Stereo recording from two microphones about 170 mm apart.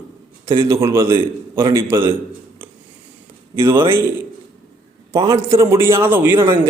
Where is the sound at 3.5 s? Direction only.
15° right (ahead or behind).